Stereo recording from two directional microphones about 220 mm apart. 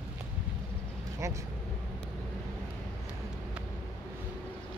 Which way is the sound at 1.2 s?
15° right (ahead or behind).